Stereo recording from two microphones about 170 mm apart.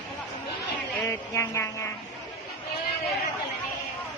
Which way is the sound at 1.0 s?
15° left (ahead or behind).